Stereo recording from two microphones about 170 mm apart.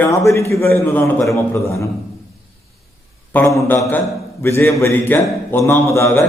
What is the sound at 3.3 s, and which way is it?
A man's voice, 15° left (ahead or behind).